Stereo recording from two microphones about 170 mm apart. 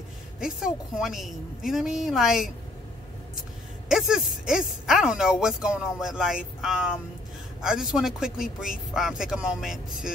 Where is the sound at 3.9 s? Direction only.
5° right (ahead or behind).